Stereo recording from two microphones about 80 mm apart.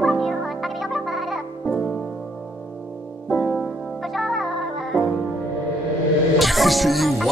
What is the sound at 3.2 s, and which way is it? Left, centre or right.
Music, centre.